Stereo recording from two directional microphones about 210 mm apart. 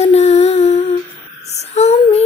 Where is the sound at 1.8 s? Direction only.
30° left (ahead or behind).